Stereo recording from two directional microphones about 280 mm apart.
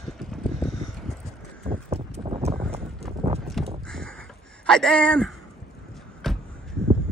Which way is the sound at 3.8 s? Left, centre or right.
Centre.